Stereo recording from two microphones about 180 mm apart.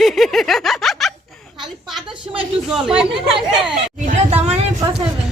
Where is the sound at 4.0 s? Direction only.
35° right (ahead or behind).